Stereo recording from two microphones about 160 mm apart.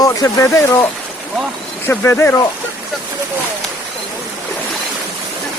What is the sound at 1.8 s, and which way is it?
Speech, 15° left (ahead or behind).